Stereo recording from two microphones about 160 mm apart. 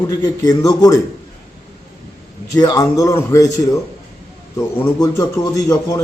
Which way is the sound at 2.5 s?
20° left (ahead or behind).